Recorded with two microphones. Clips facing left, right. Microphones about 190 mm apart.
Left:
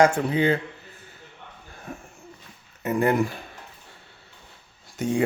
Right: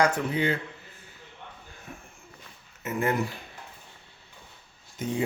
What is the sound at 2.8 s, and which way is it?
Speech, 40° left (ahead or behind).